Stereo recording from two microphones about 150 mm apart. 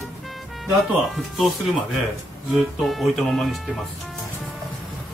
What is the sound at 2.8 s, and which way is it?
Speech, centre (ahead or behind).